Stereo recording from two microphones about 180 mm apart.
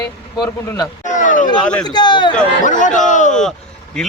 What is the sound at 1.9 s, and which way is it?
Speech, 25° left (ahead or behind).